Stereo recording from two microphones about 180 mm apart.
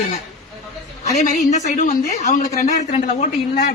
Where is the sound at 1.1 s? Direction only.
40° left (ahead or behind).